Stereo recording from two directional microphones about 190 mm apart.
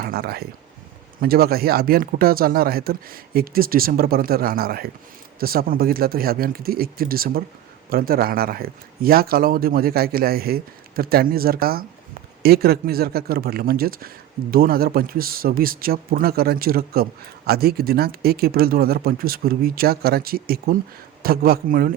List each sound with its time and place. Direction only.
0.0 s speech: 55° right (ahead or behind)